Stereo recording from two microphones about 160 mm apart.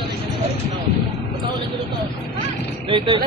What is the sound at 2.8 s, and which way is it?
Speech, 30° right (ahead or behind).